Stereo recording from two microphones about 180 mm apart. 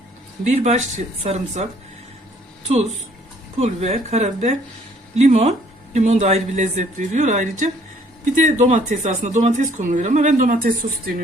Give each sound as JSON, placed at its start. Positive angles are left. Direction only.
{"t": 0.4, "sound": "speech", "side_deg": -35}
{"t": 3.6, "sound": "speech", "side_deg": -35}